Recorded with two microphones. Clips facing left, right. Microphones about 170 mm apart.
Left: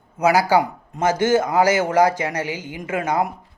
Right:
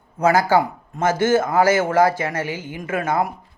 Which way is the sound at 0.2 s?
10° left (ahead or behind).